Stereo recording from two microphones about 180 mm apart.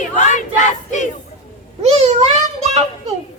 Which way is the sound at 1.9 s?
35° right (ahead or behind).